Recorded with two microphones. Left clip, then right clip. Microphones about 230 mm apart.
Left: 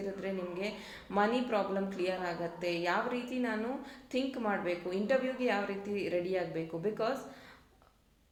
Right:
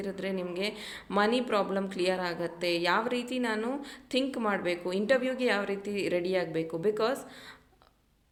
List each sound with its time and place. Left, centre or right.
0.0 s a woman's voice: right